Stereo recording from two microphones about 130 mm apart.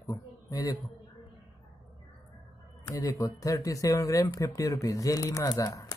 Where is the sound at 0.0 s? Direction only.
25° left (ahead or behind).